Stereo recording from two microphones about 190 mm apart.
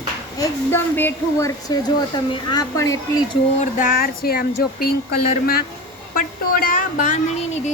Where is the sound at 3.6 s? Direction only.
45° left (ahead or behind).